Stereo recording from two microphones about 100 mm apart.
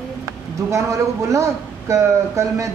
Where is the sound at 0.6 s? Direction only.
30° right (ahead or behind).